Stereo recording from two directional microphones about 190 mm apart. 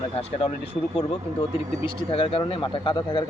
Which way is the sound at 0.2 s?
30° left (ahead or behind).